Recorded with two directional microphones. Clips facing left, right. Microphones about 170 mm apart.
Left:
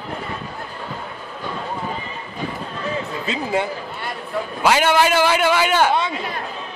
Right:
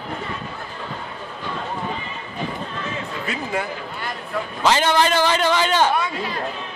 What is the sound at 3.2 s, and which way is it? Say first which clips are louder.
Speech: left 4 dB; 20° left (ahead or behind).